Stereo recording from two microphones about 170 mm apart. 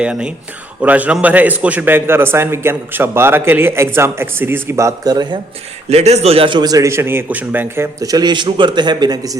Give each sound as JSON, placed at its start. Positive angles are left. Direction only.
{"t": 0.0, "sound": "a man's voice", "side_deg": -5}
{"t": 5.9, "sound": "a man's voice", "side_deg": -40}